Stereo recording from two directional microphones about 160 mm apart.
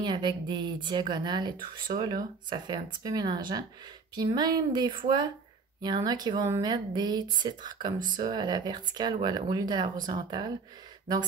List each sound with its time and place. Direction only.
0.0 s speech: 30° right (ahead or behind)